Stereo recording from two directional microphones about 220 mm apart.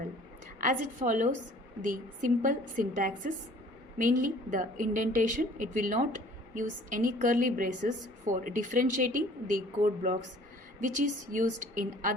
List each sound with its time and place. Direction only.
0.6 s a woman's voice: 35° right (ahead or behind)